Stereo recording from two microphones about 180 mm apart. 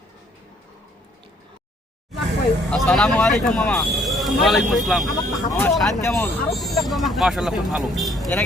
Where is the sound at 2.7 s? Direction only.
Centre (ahead or behind).